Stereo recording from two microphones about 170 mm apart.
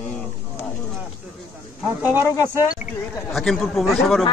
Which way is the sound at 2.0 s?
10° right (ahead or behind).